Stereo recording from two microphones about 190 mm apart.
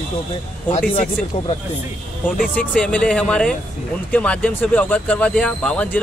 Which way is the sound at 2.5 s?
5° left (ahead or behind).